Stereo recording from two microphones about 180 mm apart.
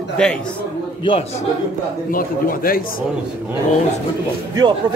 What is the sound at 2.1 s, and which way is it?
Speech, 50° left (ahead or behind).